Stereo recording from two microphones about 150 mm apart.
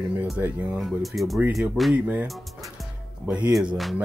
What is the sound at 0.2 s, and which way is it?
Speech, 10° right (ahead or behind).